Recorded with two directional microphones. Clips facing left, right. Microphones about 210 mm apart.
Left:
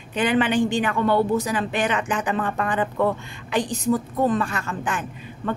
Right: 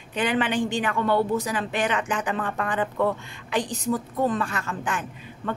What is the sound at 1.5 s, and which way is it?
A woman's voice, 15° left (ahead or behind).